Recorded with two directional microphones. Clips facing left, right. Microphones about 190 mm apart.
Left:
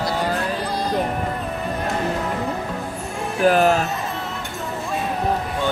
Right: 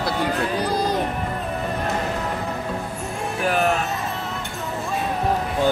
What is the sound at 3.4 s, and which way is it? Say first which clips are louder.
Speech: left 6 dB; 35° left (ahead or behind).